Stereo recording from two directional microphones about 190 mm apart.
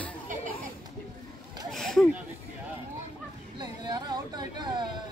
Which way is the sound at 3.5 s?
20° right (ahead or behind).